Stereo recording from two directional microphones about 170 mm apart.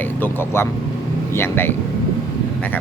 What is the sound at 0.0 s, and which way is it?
Vehicle, 10° left (ahead or behind).